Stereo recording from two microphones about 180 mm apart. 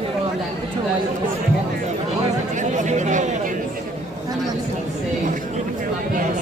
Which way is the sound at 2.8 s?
40° right (ahead or behind).